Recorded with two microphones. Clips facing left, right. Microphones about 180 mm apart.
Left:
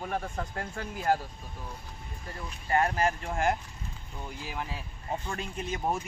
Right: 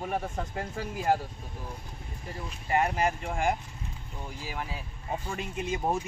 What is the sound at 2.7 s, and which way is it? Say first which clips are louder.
Speech: even; 15° right (ahead or behind).